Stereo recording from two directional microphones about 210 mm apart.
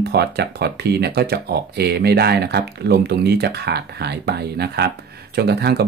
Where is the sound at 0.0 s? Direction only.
50° right (ahead or behind).